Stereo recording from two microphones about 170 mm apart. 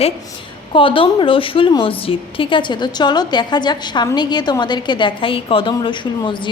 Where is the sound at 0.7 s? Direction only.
30° left (ahead or behind).